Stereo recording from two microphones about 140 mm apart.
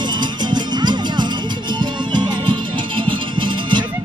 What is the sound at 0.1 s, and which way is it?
Music, 30° right (ahead or behind).